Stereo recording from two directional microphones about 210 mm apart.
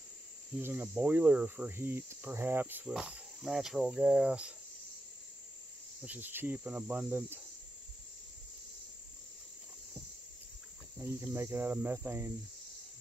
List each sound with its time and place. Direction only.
0.6 s cricket: 10° right (ahead or behind)
6.0 s cricket: 10° right (ahead or behind)
11.0 s cricket: 15° right (ahead or behind)